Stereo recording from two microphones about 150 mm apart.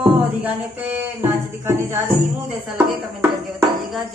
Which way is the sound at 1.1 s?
15° right (ahead or behind).